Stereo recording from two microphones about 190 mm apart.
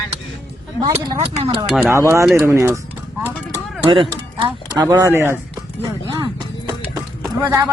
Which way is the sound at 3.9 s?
25° right (ahead or behind).